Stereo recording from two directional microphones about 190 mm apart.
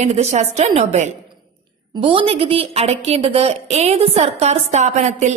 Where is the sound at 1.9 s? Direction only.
25° right (ahead or behind).